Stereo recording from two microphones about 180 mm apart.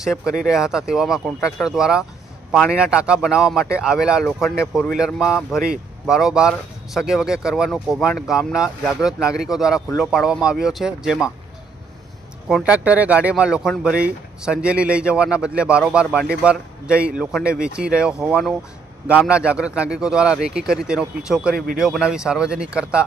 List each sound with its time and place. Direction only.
0.0 s a man's voice: centre (ahead or behind)
12.5 s a man's voice: 5° right (ahead or behind)